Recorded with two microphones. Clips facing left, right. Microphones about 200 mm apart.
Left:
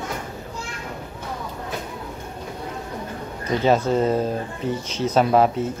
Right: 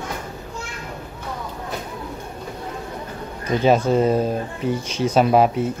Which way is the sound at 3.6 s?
15° right (ahead or behind).